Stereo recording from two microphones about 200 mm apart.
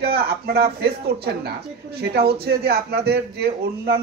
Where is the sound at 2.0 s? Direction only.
50° right (ahead or behind).